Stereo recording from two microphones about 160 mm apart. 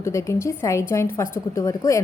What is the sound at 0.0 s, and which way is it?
A woman's voice, 20° left (ahead or behind).